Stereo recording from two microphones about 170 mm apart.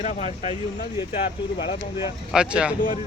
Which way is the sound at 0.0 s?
45° left (ahead or behind).